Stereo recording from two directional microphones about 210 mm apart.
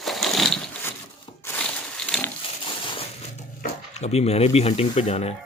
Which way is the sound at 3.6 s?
30° left (ahead or behind).